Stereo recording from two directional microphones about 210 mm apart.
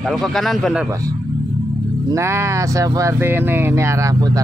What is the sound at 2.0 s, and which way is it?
Speech, 15° right (ahead or behind).